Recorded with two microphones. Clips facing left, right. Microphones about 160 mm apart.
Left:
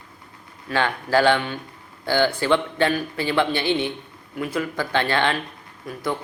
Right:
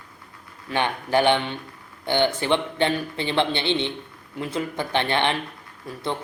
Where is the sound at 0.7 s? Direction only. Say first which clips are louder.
Left 2 dB; 20° right (ahead or behind).